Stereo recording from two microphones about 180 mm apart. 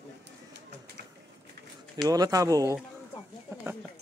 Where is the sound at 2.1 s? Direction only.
20° right (ahead or behind).